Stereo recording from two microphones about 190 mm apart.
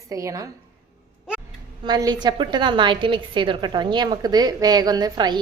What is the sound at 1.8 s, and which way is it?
A woman's voice, 20° right (ahead or behind).